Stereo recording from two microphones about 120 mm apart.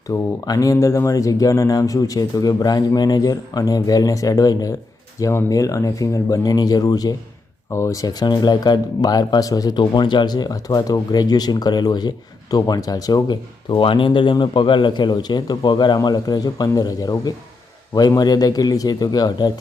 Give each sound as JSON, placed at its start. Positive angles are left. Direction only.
{"t": 0.1, "sound": "speech", "side_deg": 30}